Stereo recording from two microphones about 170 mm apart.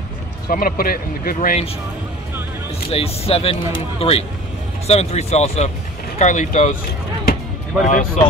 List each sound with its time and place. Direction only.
0.5 s speech: 55° left (ahead or behind)
2.9 s speech: 35° left (ahead or behind)
7.8 s speech: 50° left (ahead or behind)